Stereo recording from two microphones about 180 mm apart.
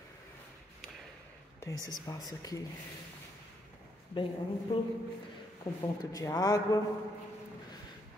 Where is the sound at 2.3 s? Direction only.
20° left (ahead or behind).